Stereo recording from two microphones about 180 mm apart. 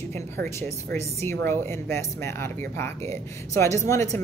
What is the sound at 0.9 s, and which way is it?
Speech, 15° left (ahead or behind).